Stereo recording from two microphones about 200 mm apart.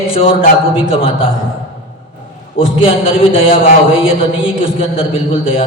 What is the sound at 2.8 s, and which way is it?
Speech, 30° left (ahead or behind).